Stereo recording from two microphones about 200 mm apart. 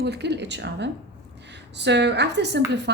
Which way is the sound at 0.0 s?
55° right (ahead or behind).